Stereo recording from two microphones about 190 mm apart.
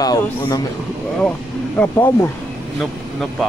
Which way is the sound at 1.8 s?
10° left (ahead or behind).